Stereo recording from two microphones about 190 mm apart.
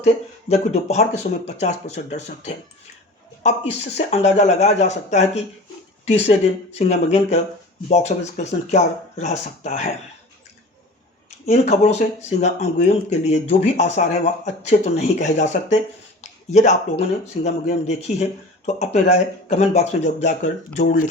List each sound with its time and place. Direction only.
0.0 s speech: 35° left (ahead or behind)
11.4 s speech: 35° left (ahead or behind)